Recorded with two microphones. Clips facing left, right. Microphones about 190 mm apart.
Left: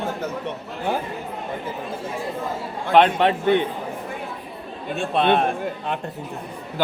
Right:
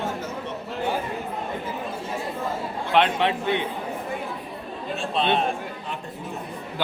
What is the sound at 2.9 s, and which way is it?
Speech, 45° left (ahead or behind).